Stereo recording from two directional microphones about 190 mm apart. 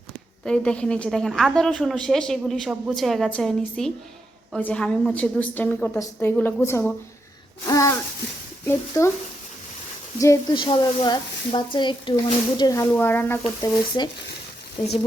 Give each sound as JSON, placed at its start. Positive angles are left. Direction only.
{"t": 0.4, "sound": "a woman's voice", "side_deg": 5}
{"t": 8.9, "sound": "a woman's voice", "side_deg": 15}
{"t": 10.2, "sound": "speech", "side_deg": 20}
{"t": 13.6, "sound": "speech", "side_deg": 20}